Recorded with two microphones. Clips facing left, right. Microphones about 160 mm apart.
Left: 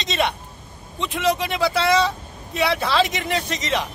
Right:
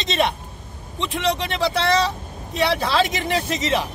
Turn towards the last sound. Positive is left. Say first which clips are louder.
# right 2 dB
turn(degrees=0)  # may be behind; listen again after turning